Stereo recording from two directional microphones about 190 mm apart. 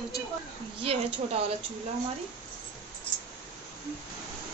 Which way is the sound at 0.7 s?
30° right (ahead or behind).